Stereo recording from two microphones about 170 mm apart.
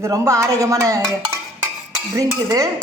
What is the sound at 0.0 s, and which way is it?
Dishes, 20° right (ahead or behind).